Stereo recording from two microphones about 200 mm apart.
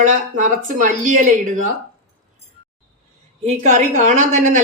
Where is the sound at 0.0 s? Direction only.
40° right (ahead or behind).